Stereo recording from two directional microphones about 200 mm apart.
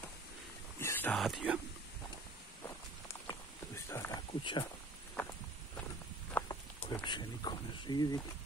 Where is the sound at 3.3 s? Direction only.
15° left (ahead or behind).